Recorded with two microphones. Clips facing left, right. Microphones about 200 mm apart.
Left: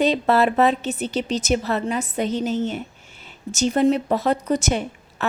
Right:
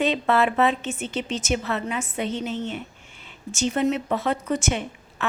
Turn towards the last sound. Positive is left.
turn(degrees=40)  # may be behind; listen again after turning